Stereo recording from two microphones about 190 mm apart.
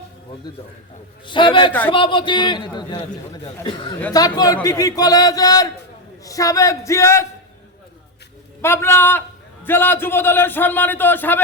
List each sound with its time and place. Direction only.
1.3 s a man's voice: 25° left (ahead or behind)
4.1 s a man's voice: 20° left (ahead or behind)
8.6 s a man's voice: 15° left (ahead or behind)